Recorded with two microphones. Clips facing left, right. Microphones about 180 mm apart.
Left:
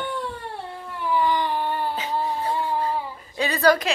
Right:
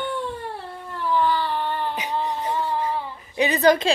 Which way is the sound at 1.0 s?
15° left (ahead or behind).